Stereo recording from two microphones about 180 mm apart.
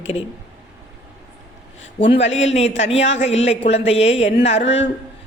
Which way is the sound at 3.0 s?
90° left.